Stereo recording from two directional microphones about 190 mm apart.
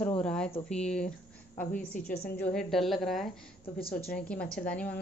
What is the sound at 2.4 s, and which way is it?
A woman's voice, centre (ahead or behind).